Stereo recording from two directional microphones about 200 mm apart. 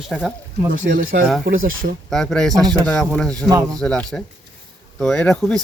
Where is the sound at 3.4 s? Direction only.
20° right (ahead or behind).